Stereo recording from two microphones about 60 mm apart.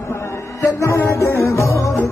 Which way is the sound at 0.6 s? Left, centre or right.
Left.